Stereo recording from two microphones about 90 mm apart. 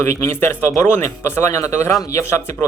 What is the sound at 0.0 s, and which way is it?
Speech, 25° left (ahead or behind).